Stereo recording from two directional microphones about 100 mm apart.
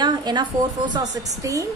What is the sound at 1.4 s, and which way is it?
Speech, 35° right (ahead or behind).